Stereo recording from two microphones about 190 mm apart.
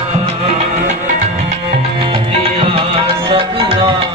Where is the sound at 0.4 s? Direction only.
35° right (ahead or behind).